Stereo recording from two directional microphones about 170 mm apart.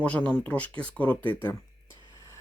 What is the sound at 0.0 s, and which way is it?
Speech, 5° left (ahead or behind).